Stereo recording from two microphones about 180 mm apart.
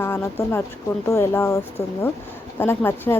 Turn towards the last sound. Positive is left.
turn(degrees=10)  # may be behind; listen again after turning